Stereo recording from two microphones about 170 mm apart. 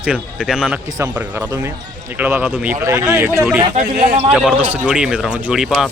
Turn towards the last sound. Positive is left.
turn(degrees=-5)  # may be behind; listen again after turning